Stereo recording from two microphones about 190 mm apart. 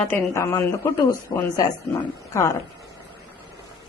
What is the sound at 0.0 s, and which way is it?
Speech, 10° left (ahead or behind).